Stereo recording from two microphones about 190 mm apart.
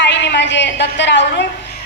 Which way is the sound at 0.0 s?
70° left (ahead or behind).